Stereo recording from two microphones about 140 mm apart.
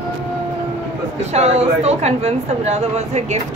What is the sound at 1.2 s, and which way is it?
Speech, 50° right (ahead or behind).